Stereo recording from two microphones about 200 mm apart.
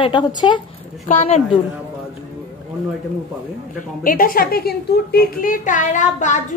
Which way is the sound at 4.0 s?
45° left (ahead or behind).